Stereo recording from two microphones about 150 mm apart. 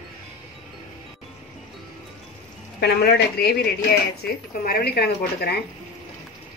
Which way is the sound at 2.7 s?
90° left.